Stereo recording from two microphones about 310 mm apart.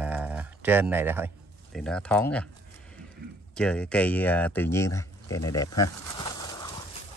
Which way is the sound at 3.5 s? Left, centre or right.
Centre.